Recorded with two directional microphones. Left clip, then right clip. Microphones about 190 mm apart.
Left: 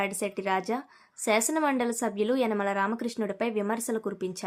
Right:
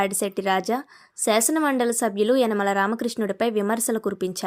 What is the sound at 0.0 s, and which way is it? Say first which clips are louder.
A woman's voice: right 6 dB; 30° right (ahead or behind).